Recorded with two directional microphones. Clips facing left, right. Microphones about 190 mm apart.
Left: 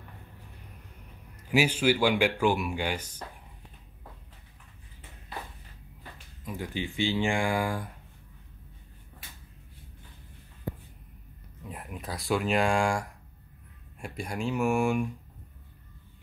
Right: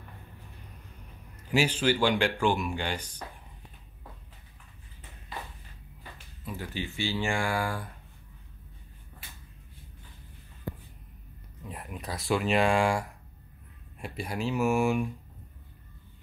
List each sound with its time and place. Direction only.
1.5 s speech: 10° left (ahead or behind)
6.4 s speech: 15° left (ahead or behind)
11.6 s speech: centre (ahead or behind)